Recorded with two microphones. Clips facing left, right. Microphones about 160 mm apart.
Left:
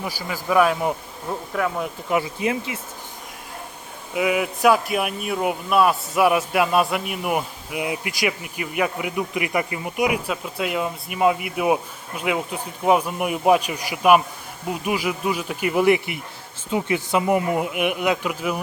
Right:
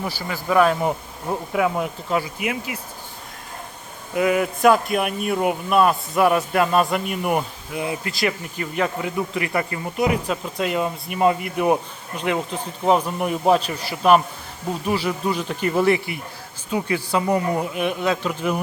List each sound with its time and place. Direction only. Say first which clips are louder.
0.0 s speech: right 1 dB; 10° left (ahead or behind)
1.5 s speech: right 3 dB; 10° right (ahead or behind)
2.0 s speech: left 5 dB; 20° left (ahead or behind)
4.1 s speech: right 2 dB; 5° left (ahead or behind)
7.7 s speech: even; 15° left (ahead or behind)